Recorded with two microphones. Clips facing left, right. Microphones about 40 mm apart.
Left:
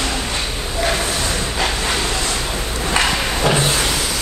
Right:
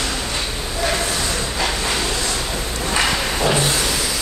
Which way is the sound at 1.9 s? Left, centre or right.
Centre.